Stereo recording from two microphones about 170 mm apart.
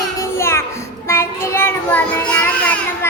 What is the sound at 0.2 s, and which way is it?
Music, 15° left (ahead or behind).